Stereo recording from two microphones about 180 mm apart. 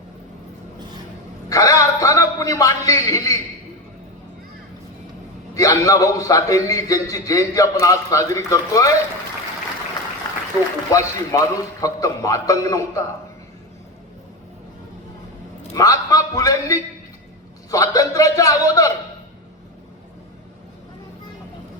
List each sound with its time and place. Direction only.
1.5 s a man's voice: 20° left (ahead or behind)
5.5 s a man's voice: 20° left (ahead or behind)
10.9 s a man's voice: 20° left (ahead or behind)
15.7 s a man's voice: 20° left (ahead or behind)